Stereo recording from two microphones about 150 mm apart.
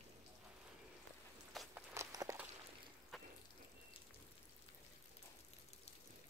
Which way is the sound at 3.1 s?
Centre (ahead or behind).